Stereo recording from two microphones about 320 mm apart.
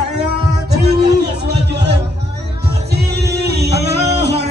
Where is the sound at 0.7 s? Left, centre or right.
Right.